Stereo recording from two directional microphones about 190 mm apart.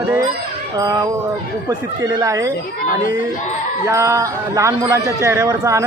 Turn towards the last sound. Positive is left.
turn(degrees=-15)  # may be behind; listen again after turning